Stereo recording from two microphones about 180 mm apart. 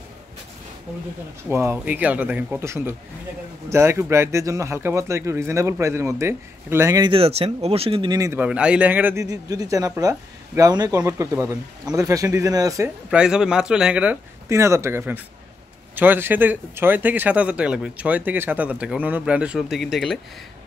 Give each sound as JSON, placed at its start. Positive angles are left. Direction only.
{"t": 1.5, "sound": "speech", "side_deg": -15}
{"t": 7.1, "sound": "speech", "side_deg": -35}
{"t": 13.1, "sound": "speech", "side_deg": -5}